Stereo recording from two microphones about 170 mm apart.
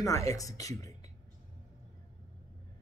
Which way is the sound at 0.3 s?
20° left (ahead or behind).